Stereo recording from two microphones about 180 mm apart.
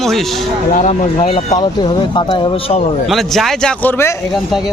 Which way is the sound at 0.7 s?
40° left (ahead or behind).